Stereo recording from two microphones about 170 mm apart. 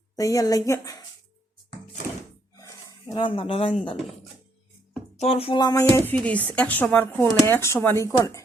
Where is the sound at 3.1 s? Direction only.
30° left (ahead or behind).